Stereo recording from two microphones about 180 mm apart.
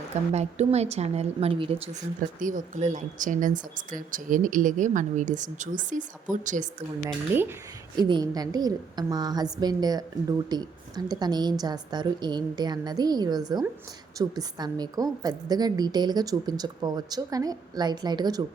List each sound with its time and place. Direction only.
0.3 s a woman's voice: 35° right (ahead or behind)
2.4 s speech: 45° right (ahead or behind)
7.9 s a woman's voice: 25° right (ahead or behind)